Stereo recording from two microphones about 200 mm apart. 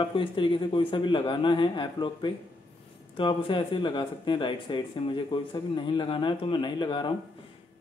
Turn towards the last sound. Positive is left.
turn(degrees=25)  # may be behind; listen again after turning